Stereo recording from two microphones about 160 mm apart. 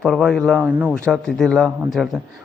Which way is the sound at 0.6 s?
10° right (ahead or behind).